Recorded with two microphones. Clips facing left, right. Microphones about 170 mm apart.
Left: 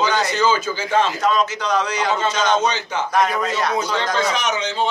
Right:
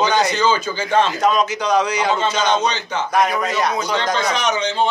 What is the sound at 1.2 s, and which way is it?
Speech, 15° right (ahead or behind).